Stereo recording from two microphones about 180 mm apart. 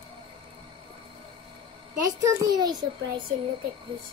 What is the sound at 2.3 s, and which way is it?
Speech, 20° right (ahead or behind).